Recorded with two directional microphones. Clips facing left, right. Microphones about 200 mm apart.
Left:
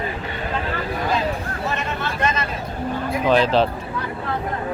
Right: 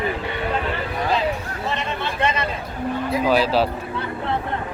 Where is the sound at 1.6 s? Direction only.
25° right (ahead or behind).